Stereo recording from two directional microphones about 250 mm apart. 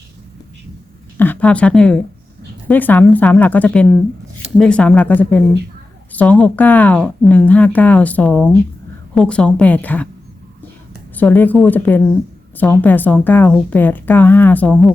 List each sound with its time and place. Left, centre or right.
1.2 s a woman's voice: centre
11.1 s speech: centre